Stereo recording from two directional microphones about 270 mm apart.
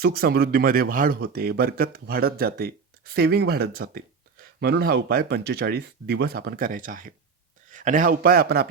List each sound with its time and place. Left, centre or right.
0.0 s speech: right